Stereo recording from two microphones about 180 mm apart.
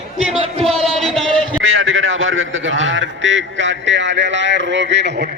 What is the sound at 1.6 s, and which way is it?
A man's voice, 90° right.